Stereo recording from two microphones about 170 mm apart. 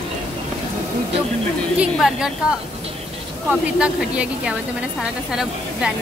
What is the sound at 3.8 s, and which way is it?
A woman's voice, 5° right (ahead or behind).